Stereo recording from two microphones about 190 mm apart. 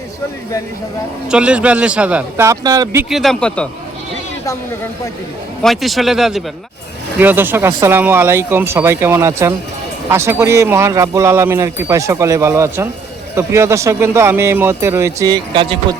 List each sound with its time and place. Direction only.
1.3 s speech: 5° right (ahead or behind)
3.1 s speech: centre (ahead or behind)
5.6 s speech: centre (ahead or behind); by 16.0 s 25° right (ahead or behind)